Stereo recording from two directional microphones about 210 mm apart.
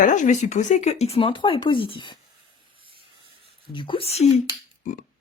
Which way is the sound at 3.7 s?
25° left (ahead or behind).